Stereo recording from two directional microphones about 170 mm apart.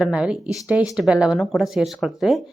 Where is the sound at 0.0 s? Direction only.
5° right (ahead or behind).